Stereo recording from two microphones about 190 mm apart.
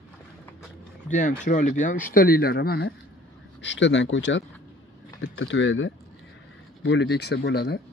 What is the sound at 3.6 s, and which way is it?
Speech, 75° left (ahead or behind).